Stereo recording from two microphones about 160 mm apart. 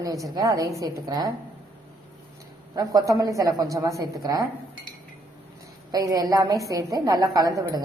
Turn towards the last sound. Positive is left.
turn(degrees=-25)  # may be behind; listen again after turning